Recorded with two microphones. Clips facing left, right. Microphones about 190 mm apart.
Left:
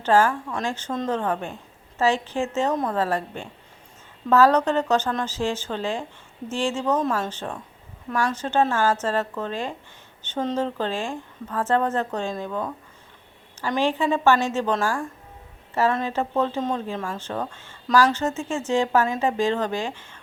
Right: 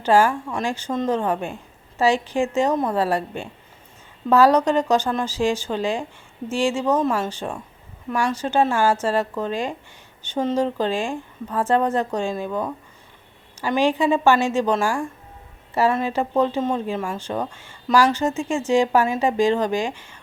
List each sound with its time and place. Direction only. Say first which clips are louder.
0.0 s a woman's voice: right 2 dB; 10° right (ahead or behind)